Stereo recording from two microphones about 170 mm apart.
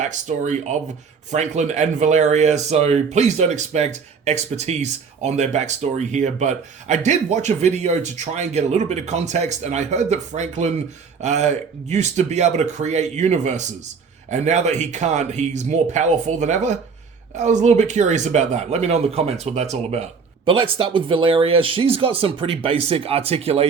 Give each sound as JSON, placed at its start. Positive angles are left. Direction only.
{"t": 0.0, "sound": "speech", "side_deg": -45}